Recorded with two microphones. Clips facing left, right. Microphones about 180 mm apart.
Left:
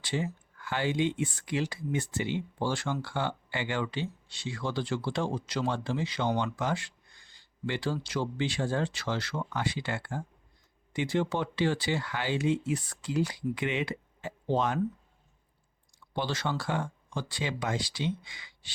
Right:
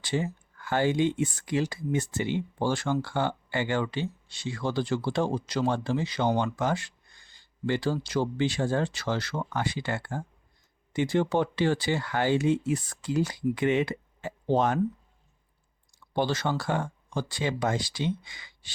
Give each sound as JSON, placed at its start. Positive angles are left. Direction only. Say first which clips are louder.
{"t": 0.0, "sound": "speech", "louder": "right 3 dB", "side_deg": -45}
{"t": 16.1, "sound": "speech", "louder": "right 5 dB", "side_deg": -45}